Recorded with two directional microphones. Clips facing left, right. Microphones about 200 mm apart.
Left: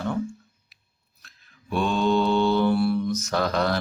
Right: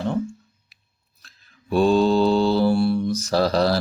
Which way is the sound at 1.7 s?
35° right (ahead or behind).